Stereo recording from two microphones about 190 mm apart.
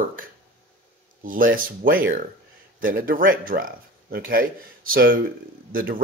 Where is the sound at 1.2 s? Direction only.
45° right (ahead or behind).